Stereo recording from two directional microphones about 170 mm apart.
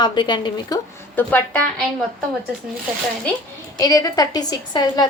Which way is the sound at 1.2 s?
10° left (ahead or behind).